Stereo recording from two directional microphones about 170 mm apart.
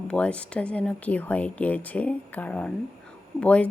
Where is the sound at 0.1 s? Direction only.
5° left (ahead or behind).